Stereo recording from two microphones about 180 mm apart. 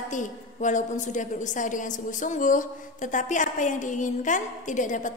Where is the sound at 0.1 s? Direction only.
45° left (ahead or behind).